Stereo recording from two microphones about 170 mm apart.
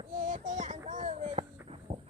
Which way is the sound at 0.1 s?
50° right (ahead or behind).